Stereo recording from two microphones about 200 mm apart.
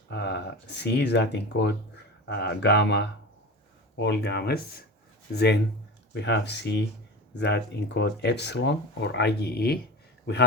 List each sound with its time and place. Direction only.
0.1 s speech: 60° left (ahead or behind)